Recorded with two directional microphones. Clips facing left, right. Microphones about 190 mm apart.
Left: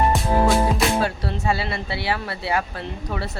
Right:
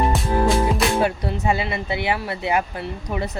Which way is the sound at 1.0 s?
20° right (ahead or behind).